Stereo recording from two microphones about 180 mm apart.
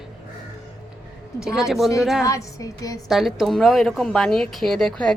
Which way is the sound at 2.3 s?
20° left (ahead or behind).